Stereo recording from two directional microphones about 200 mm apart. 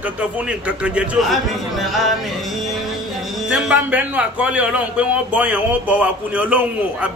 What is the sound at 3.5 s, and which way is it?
A man's voice, 5° right (ahead or behind).